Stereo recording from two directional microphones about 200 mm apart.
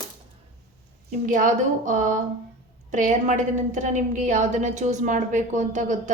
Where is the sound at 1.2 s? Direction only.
40° right (ahead or behind).